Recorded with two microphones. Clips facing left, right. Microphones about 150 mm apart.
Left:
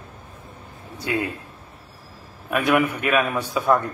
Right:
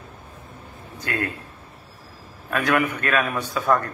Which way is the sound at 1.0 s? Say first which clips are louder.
Left 3 dB; 15° left (ahead or behind).